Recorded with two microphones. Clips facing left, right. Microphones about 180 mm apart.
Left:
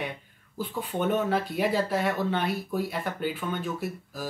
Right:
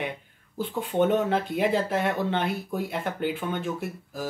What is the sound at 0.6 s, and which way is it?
Speech, 25° right (ahead or behind).